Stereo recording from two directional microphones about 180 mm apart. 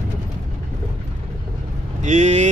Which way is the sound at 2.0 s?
40° right (ahead or behind).